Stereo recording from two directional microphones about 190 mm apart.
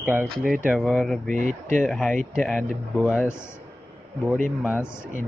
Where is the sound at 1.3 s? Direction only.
40° right (ahead or behind).